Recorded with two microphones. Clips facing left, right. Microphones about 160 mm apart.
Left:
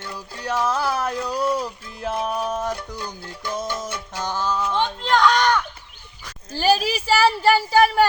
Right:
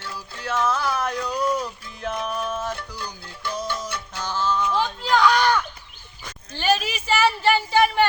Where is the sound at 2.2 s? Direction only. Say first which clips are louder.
Left 3 dB; 35° left (ahead or behind).